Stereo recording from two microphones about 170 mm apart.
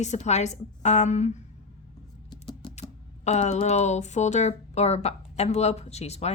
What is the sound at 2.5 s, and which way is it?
Typing, 25° left (ahead or behind).